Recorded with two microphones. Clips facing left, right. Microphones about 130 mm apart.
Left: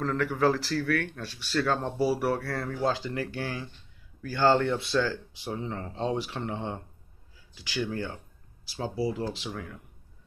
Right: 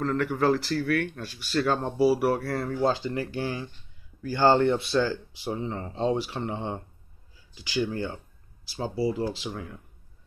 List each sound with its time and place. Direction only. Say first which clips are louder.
0.0 s speech: right 1 dB; centre (ahead or behind)
2.4 s speech: right 4 dB; 25° right (ahead or behind)
2.9 s speech: right 2 dB; centre (ahead or behind)
3.3 s speech: right 3 dB; 20° right (ahead or behind)
5.5 s speech: right 3 dB; 15° right (ahead or behind)
6.0 s speech: right 4 dB; 5° right (ahead or behind)
7.9 s speech: right 2 dB; 20° right (ahead or behind)
8.9 s speech: right 3 dB; 5° right (ahead or behind)
9.5 s speech: right 1 dB; 15° right (ahead or behind)